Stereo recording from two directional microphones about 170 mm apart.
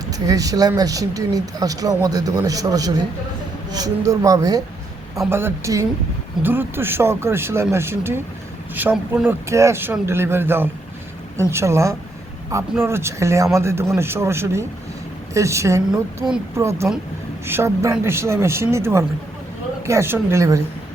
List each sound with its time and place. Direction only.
0.1 s speech: 20° right (ahead or behind)
15.9 s a woman's voice: 5° right (ahead or behind)
16.6 s speech: 15° right (ahead or behind)